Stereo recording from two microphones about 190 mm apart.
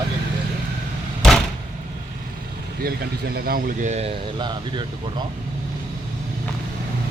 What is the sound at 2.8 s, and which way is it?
Speech, 50° right (ahead or behind).